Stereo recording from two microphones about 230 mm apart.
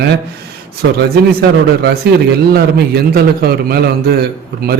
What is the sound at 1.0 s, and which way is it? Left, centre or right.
Speech, right.